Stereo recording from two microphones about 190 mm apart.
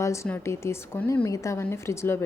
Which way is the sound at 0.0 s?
15° left (ahead or behind).